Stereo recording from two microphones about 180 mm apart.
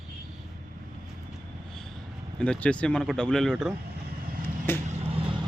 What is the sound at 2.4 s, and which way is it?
Speech, 5° left (ahead or behind).